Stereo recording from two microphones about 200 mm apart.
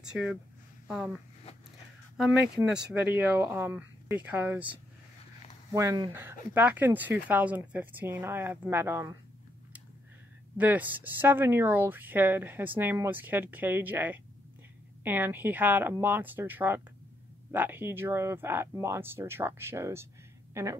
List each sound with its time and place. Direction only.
0.0 s speech: 5° right (ahead or behind)
2.1 s speech: 5° right (ahead or behind)
10.6 s a woman's voice: 10° right (ahead or behind)